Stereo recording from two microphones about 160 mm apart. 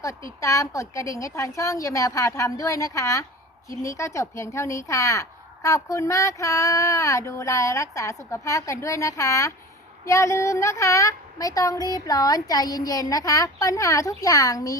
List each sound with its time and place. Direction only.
0.3 s speech: 20° left (ahead or behind)